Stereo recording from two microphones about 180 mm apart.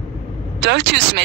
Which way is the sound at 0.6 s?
75° right (ahead or behind).